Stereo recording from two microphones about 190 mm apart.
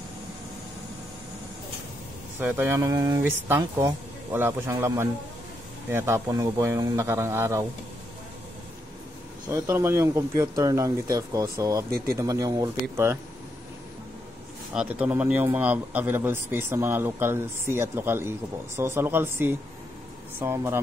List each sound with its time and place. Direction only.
2.4 s a man's voice: 10° right (ahead or behind)
9.5 s a man's voice: 15° right (ahead or behind)
14.7 s a man's voice: 5° right (ahead or behind)